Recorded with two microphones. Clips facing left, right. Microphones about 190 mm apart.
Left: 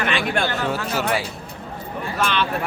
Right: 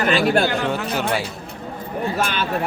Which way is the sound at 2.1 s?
45° right (ahead or behind).